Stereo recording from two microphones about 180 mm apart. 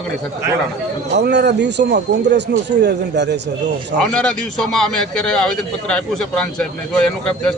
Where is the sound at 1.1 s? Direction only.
70° right (ahead or behind).